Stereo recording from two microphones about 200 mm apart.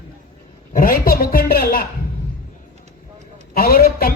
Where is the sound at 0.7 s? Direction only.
45° left (ahead or behind).